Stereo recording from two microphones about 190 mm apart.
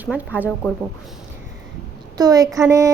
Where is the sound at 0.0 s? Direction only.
10° right (ahead or behind).